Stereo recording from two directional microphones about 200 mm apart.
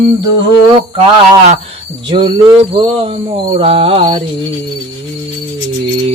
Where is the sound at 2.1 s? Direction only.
25° right (ahead or behind).